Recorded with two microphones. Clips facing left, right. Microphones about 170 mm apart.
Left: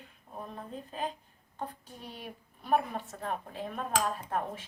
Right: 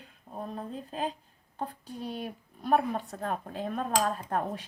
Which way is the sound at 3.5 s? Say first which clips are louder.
Right 4 dB; 55° right (ahead or behind).